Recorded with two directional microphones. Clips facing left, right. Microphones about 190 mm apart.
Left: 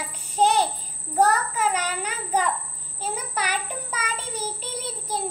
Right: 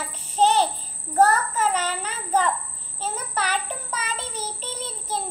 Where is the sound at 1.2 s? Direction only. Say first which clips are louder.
Right 2 dB; 10° left (ahead or behind).